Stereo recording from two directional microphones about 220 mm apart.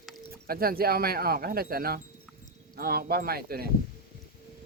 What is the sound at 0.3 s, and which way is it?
Speech, 45° right (ahead or behind).